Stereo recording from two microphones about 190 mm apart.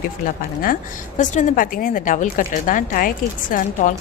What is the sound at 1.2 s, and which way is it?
A woman's voice, 40° left (ahead or behind).